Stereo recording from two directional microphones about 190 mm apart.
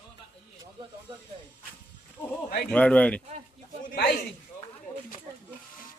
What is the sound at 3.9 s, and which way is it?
Speech, 50° left (ahead or behind).